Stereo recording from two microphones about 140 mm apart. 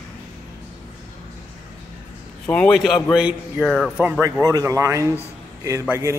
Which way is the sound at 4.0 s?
15° right (ahead or behind).